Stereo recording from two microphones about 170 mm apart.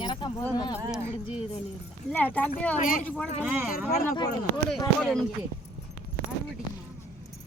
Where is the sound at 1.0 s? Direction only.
10° right (ahead or behind).